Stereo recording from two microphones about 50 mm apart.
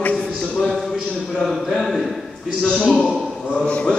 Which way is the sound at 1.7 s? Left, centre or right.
Centre.